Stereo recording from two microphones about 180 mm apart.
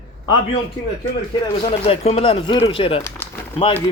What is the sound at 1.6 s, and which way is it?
Speech, 30° left (ahead or behind).